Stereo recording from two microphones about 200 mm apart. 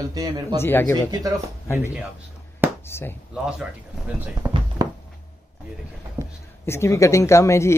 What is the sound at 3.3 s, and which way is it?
Speech, 5° right (ahead or behind).